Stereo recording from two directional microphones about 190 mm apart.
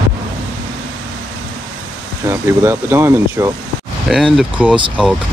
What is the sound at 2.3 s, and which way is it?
Speech, 10° right (ahead or behind).